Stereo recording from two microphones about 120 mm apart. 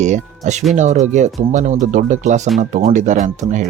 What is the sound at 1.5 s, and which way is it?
Speech, 90° right.